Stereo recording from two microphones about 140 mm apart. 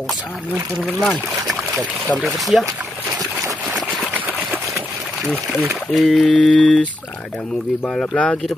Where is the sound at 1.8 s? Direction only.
Centre (ahead or behind).